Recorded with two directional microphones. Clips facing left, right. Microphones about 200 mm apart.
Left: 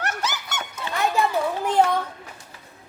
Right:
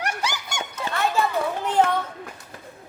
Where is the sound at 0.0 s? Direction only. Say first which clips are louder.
Even; 10° right (ahead or behind).